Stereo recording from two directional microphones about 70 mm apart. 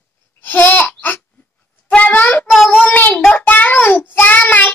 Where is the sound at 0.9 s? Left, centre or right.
Left.